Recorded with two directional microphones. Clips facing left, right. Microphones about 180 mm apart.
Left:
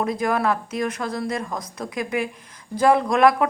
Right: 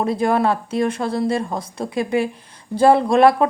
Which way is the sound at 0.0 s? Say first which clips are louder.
Right 4 dB; 30° right (ahead or behind).